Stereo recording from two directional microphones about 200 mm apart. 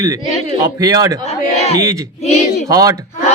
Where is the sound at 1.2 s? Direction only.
30° left (ahead or behind).